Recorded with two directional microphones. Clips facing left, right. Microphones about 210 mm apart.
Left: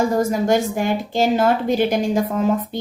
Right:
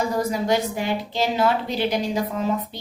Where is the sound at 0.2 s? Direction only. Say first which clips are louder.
Left 4 dB; 45° left (ahead or behind).